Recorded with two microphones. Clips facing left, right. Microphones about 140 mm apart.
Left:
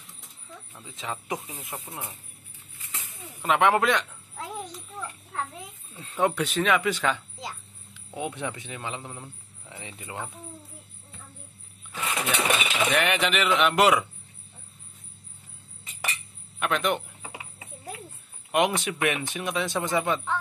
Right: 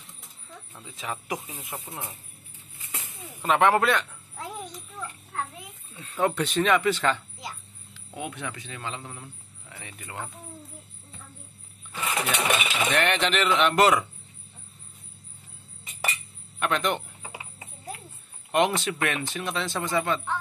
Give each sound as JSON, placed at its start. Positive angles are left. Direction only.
{"t": 0.8, "sound": "speech", "side_deg": 20}
{"t": 3.4, "sound": "speech", "side_deg": 15}
{"t": 5.9, "sound": "speech", "side_deg": 20}
{"t": 6.3, "sound": "a man's voice", "side_deg": 5}
{"t": 12.0, "sound": "speech", "side_deg": 0}
{"t": 16.5, "sound": "speech", "side_deg": 5}
{"t": 18.5, "sound": "speech", "side_deg": 10}